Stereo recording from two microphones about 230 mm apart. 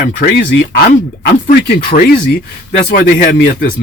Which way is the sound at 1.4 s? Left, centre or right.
Left.